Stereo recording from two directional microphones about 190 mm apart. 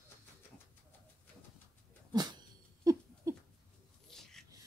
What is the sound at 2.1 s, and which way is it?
Dog, 20° right (ahead or behind).